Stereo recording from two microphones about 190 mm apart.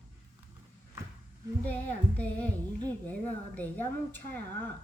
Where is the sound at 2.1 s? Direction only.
10° left (ahead or behind).